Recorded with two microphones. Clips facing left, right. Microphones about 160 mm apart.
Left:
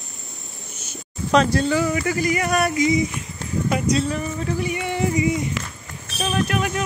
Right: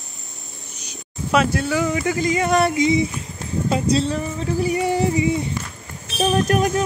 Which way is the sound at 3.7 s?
30° right (ahead or behind).